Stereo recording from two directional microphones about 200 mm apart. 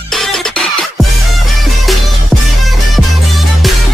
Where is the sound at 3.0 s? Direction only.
Centre (ahead or behind).